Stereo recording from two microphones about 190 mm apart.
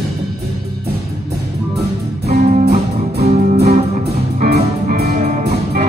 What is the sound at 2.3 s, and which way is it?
Music, 55° right (ahead or behind).